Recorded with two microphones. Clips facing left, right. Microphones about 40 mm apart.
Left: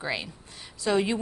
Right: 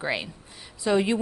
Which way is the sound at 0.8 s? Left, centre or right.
Centre.